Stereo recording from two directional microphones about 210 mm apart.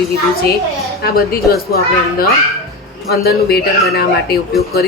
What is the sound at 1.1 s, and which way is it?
Speech, 45° left (ahead or behind).